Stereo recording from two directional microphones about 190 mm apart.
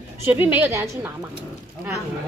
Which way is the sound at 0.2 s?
10° right (ahead or behind).